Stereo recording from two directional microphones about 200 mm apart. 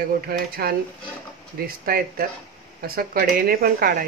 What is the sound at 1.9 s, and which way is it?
Speech, 45° right (ahead or behind).